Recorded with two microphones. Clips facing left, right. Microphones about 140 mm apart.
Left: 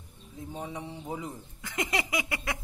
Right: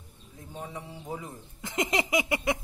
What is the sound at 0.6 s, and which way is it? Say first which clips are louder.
Mantra: left 1 dB; 20° left (ahead or behind).